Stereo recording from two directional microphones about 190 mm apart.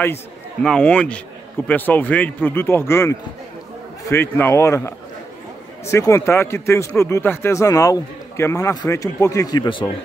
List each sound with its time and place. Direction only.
0.0 s a man's voice: 10° left (ahead or behind); by 9.9 s 25° left (ahead or behind)